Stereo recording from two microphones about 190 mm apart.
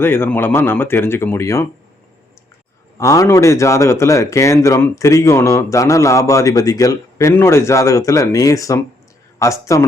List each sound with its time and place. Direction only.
0.0 s speech: 10° left (ahead or behind)
3.0 s speech: 15° left (ahead or behind)